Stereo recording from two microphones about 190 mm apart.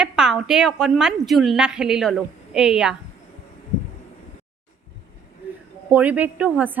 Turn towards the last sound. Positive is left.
turn(degrees=-10)  # may be behind; listen again after turning